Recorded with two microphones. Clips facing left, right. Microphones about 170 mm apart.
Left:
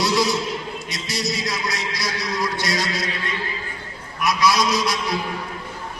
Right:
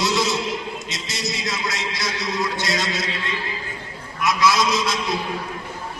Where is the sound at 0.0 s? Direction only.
20° right (ahead or behind).